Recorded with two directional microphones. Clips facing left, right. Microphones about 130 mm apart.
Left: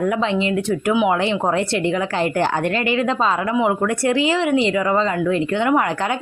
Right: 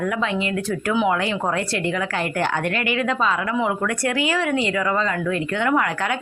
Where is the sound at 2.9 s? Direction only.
30° left (ahead or behind).